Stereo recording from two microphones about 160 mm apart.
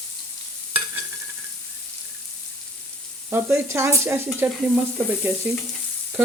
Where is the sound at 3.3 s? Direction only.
15° right (ahead or behind).